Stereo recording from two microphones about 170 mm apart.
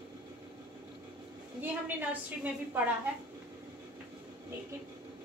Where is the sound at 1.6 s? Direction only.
10° right (ahead or behind).